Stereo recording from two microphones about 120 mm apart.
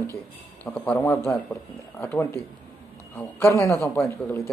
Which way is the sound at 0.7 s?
15° left (ahead or behind).